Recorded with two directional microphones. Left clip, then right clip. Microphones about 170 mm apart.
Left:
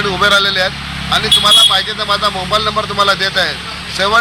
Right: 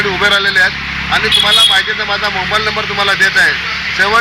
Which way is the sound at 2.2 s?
30° left (ahead or behind).